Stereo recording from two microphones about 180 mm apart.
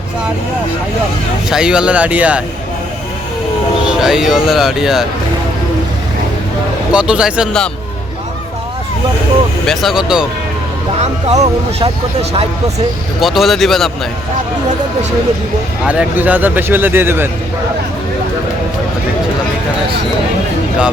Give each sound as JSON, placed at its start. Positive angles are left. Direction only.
{"t": 1.5, "sound": "speech", "side_deg": -5}
{"t": 3.8, "sound": "speech", "side_deg": -5}
{"t": 6.9, "sound": "speech", "side_deg": -5}
{"t": 9.6, "sound": "speech", "side_deg": 0}
{"t": 11.0, "sound": "speech", "side_deg": -35}
{"t": 13.1, "sound": "speech", "side_deg": 0}
{"t": 15.8, "sound": "speech", "side_deg": -5}